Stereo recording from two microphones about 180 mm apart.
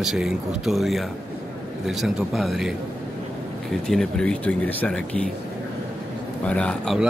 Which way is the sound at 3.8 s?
5° left (ahead or behind).